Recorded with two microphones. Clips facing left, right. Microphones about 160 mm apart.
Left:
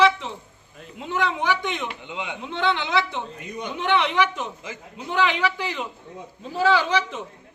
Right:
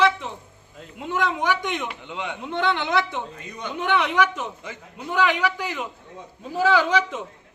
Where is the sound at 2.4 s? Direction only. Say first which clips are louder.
Right 1 dB; 10° right (ahead or behind).